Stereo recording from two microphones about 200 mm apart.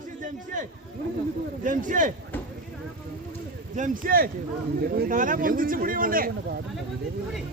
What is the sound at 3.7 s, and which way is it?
Speech, 40° right (ahead or behind).